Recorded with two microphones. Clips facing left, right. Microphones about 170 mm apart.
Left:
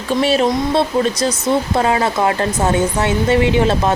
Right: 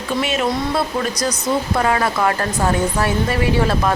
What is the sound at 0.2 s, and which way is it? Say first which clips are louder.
Speech: left 5 dB; 30° left (ahead or behind).